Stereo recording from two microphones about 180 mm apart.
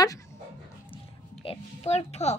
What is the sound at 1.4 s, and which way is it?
Speech, 35° left (ahead or behind).